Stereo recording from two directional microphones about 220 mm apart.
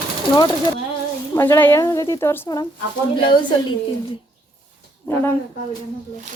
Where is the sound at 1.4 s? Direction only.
10° left (ahead or behind).